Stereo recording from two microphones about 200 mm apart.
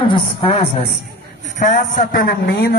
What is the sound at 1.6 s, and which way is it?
A man's voice, 40° left (ahead or behind).